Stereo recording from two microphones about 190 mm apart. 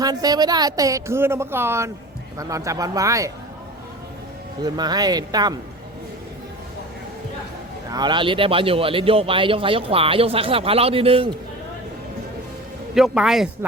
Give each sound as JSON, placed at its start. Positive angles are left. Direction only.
{"t": 0.0, "sound": "speech", "side_deg": -20}
{"t": 4.6, "sound": "a man's voice", "side_deg": -20}
{"t": 7.9, "sound": "a man's voice", "side_deg": -20}
{"t": 12.9, "sound": "speech", "side_deg": 0}